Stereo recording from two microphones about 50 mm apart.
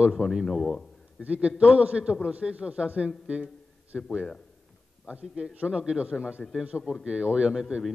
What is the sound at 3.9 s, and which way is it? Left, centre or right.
Speech, centre.